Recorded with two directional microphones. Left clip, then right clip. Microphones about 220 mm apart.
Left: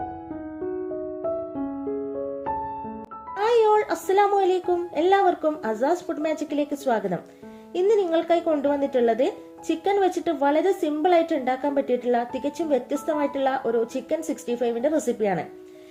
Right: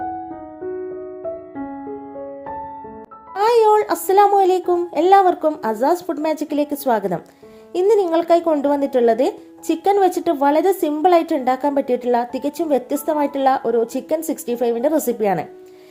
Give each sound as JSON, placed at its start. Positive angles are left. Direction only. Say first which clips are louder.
{"t": 3.3, "sound": "speech", "louder": "right 5 dB", "side_deg": -30}